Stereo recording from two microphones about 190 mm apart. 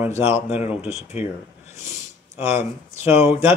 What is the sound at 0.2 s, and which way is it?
Speech, 30° left (ahead or behind).